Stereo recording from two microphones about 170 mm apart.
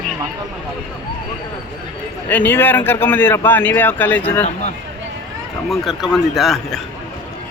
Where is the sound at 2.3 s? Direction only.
10° left (ahead or behind).